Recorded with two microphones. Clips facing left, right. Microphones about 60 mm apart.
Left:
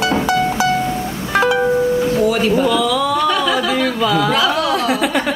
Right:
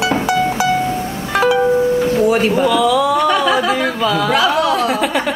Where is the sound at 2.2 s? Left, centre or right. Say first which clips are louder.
Right 4 dB; right.